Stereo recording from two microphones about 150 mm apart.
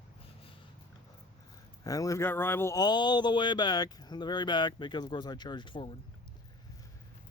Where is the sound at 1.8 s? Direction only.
25° left (ahead or behind).